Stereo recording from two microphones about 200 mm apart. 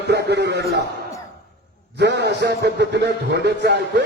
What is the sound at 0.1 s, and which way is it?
Speech, 55° right (ahead or behind).